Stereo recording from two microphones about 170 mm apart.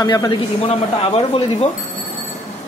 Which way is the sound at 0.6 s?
35° left (ahead or behind).